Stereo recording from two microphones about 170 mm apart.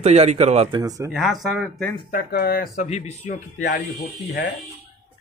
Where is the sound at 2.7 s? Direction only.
40° left (ahead or behind).